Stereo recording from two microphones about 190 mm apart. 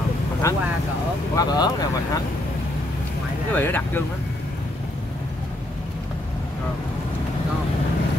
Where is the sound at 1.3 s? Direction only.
20° left (ahead or behind).